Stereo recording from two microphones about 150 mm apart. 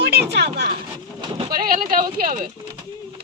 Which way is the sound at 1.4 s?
75° right (ahead or behind).